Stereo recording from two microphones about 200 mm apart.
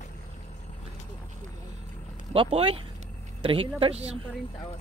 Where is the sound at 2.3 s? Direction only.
25° right (ahead or behind).